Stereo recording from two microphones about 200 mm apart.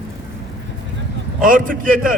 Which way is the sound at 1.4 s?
45° right (ahead or behind).